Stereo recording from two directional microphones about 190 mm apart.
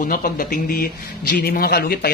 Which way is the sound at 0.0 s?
45° left (ahead or behind).